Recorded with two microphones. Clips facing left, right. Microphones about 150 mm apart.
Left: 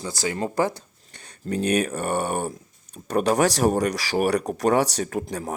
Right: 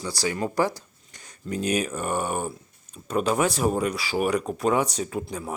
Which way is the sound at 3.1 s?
40° left (ahead or behind).